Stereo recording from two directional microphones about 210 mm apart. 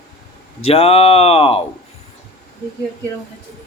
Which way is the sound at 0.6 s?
30° left (ahead or behind).